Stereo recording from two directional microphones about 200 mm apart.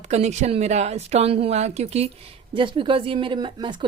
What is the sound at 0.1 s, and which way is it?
Speech, 35° right (ahead or behind).